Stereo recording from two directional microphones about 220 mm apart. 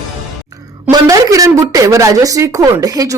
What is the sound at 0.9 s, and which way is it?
A woman's voice, 15° right (ahead or behind).